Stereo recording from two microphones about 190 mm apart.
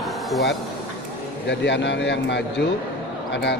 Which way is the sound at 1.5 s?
65° left (ahead or behind).